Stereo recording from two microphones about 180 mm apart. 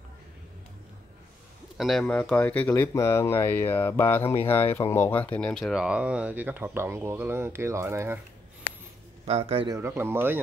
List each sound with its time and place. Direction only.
1.8 s speech: centre (ahead or behind); by 8.2 s 15° right (ahead or behind)
9.2 s a man's voice: 35° right (ahead or behind)
9.8 s speech: 15° right (ahead or behind)